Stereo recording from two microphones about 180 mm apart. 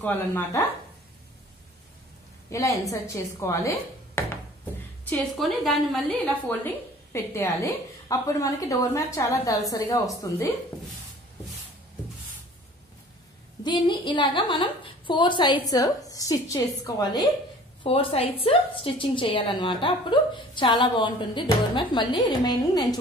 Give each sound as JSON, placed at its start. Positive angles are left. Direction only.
{"t": 0.0, "sound": "a woman's voice", "side_deg": 10}
{"t": 2.5, "sound": "a woman's voice", "side_deg": 15}
{"t": 5.1, "sound": "a woman's voice", "side_deg": 0}
{"t": 6.4, "sound": "a woman's voice", "side_deg": 15}
{"t": 13.7, "sound": "a woman's voice", "side_deg": 25}
{"t": 17.8, "sound": "a woman's voice", "side_deg": 30}